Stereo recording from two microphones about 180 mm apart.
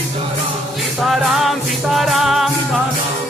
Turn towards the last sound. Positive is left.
turn(degrees=0)  # may be behind; listen again after turning